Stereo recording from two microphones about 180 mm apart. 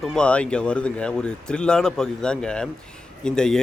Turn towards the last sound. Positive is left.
turn(degrees=5)  # may be behind; listen again after turning